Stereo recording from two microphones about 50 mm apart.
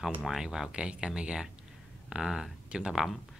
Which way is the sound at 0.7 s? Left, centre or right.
Centre.